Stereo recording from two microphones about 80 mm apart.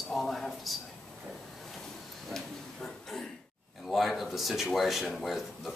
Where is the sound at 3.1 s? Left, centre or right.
Centre.